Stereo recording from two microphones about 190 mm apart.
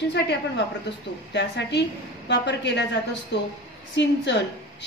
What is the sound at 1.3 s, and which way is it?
A woman's voice, 65° left (ahead or behind).